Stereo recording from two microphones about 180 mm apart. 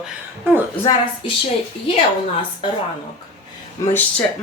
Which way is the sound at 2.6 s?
25° left (ahead or behind).